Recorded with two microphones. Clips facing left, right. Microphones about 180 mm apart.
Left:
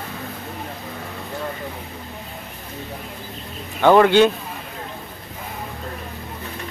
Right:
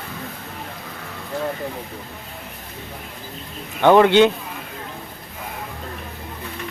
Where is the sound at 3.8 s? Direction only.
15° right (ahead or behind).